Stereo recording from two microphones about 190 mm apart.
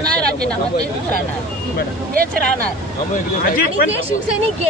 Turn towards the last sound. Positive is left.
turn(degrees=50)  # may be behind; listen again after turning